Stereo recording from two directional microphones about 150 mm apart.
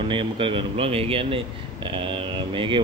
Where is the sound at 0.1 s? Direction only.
35° right (ahead or behind).